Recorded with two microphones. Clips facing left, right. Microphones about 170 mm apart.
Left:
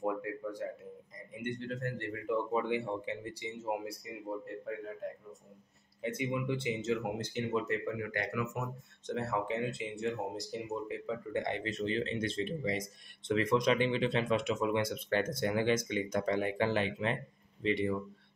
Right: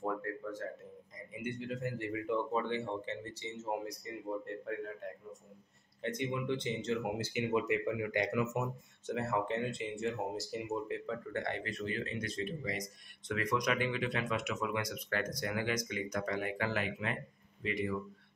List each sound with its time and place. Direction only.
0.0 s a sound: 15° left (ahead or behind)
1.3 s speech: 5° right (ahead or behind)
7.2 s speech: 10° right (ahead or behind)
9.0 s speech: centre (ahead or behind)
11.1 s speech: 15° left (ahead or behind)